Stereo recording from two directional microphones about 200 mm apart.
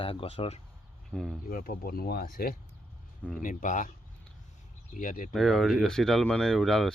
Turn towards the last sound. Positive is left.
turn(degrees=0)  # may be behind; listen again after turning